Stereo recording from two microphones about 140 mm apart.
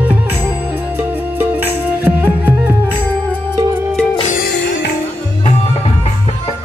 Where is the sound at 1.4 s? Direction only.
15° right (ahead or behind).